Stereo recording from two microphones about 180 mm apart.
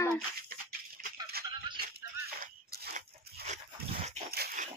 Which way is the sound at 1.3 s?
60° right (ahead or behind).